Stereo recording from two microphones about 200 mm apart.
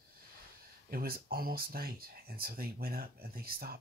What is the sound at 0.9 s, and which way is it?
Speech, 50° right (ahead or behind).